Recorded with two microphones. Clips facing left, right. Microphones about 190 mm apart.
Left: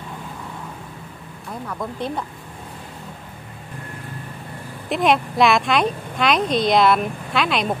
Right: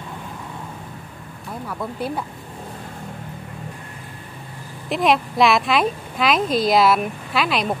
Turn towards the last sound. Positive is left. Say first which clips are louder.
# even
turn(degrees=0)  # may be behind; listen again after turning